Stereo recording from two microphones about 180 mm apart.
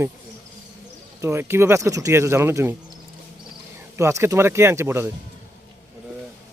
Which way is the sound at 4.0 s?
15° right (ahead or behind).